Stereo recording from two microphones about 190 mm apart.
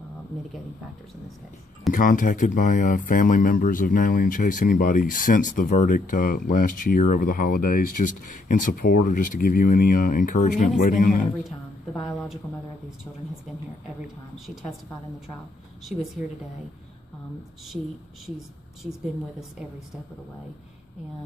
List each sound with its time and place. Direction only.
1.9 s speech: 45° left (ahead or behind)
15.9 s speech: centre (ahead or behind)